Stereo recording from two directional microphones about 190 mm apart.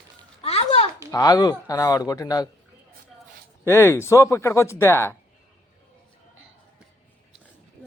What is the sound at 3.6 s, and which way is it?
Speech, 15° left (ahead or behind).